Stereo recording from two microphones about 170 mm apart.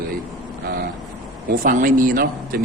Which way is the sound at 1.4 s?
55° right (ahead or behind).